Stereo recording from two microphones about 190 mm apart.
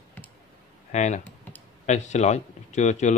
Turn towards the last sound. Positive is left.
turn(degrees=35)  # may be behind; listen again after turning